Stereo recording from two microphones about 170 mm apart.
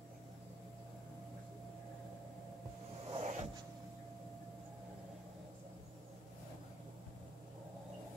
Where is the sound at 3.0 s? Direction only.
40° right (ahead or behind).